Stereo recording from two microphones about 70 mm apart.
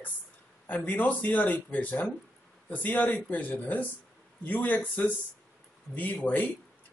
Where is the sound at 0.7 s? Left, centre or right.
Left.